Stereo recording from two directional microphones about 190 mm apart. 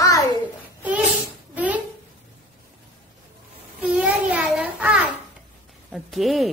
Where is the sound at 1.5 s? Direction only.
10° right (ahead or behind).